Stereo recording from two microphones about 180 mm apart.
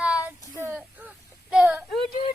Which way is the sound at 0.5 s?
10° right (ahead or behind).